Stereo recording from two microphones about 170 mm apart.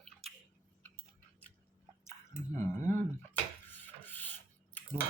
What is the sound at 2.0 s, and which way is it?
Squish, 15° left (ahead or behind).